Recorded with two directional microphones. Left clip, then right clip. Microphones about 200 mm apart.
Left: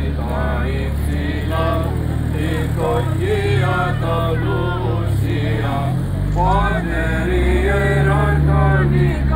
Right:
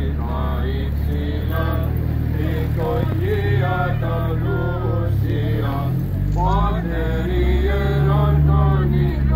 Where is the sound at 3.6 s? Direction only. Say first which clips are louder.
Left 3 dB; 60° left (ahead or behind).